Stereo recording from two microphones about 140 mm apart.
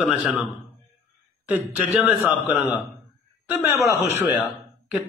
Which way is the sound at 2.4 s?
10° right (ahead or behind).